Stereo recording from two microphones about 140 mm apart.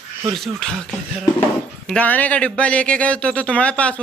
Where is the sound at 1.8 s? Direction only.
10° left (ahead or behind).